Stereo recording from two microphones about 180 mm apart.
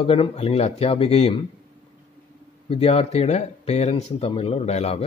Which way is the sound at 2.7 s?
35° left (ahead or behind).